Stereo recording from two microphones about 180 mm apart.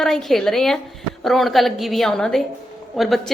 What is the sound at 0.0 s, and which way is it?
A woman's voice, centre (ahead or behind).